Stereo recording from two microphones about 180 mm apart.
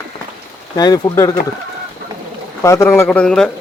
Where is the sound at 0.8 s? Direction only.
20° left (ahead or behind).